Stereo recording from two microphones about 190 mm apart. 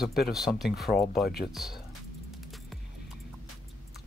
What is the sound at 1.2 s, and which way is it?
Speech, 55° left (ahead or behind).